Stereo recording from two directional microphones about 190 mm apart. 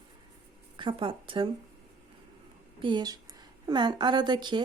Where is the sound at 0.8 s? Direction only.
25° right (ahead or behind).